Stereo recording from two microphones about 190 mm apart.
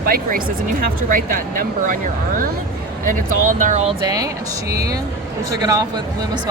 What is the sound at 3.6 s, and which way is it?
Speech, 35° right (ahead or behind).